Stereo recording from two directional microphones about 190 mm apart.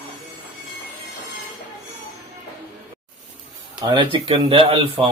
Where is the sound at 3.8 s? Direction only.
25° right (ahead or behind).